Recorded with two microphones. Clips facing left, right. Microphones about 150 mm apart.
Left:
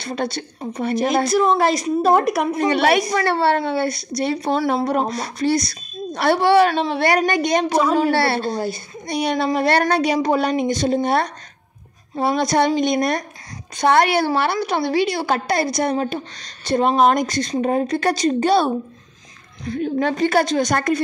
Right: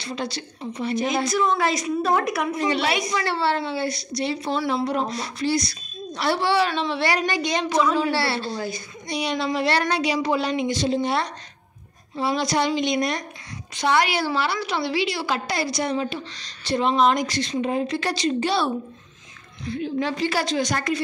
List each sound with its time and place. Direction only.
0.0 s a woman's voice: 50° left (ahead or behind)
1.0 s a woman's voice: 40° left (ahead or behind)